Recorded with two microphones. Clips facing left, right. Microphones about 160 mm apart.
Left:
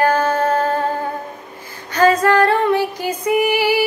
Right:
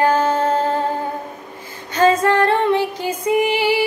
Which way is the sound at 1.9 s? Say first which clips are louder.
Left 1 dB; 25° right (ahead or behind).